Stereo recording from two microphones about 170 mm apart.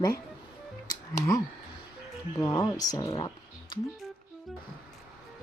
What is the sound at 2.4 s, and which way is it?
Speech, 20° left (ahead or behind).